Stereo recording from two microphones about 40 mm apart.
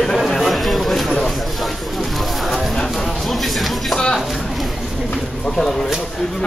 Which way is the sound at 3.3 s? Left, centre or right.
Centre.